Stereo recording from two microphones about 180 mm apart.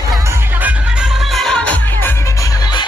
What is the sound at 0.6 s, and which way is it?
Music, centre (ahead or behind).